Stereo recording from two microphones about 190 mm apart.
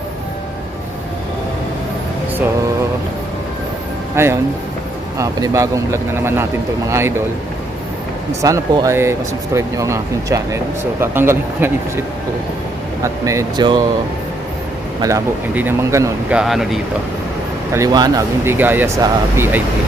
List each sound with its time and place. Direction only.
4.1 s speech: 15° right (ahead or behind)
8.4 s speech: 15° right (ahead or behind)
13.0 s speech: 15° right (ahead or behind)
15.0 s speech: 15° right (ahead or behind)
16.4 s speech: centre (ahead or behind)
17.7 s speech: 20° right (ahead or behind)